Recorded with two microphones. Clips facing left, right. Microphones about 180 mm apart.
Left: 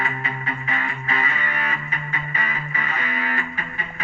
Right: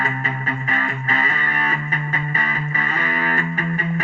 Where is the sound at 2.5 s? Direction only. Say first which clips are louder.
Right 4 dB; 40° right (ahead or behind).